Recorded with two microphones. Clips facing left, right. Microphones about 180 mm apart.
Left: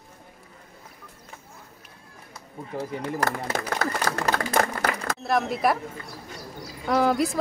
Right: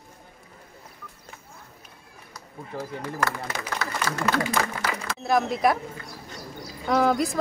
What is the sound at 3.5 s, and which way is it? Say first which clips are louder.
A man's voice: left 4 dB; 45° left (ahead or behind).